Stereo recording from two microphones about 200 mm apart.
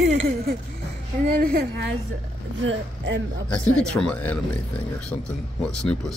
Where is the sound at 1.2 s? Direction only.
45° right (ahead or behind).